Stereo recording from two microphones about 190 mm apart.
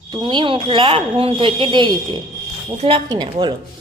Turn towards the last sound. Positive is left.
turn(degrees=-25)  # may be behind; listen again after turning